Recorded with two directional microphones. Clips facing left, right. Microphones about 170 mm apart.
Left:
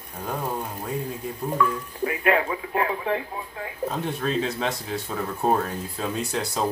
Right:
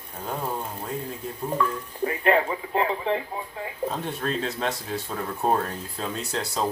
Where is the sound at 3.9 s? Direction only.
5° left (ahead or behind).